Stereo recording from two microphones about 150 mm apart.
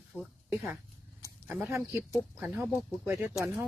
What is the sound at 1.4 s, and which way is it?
Speech, 15° right (ahead or behind).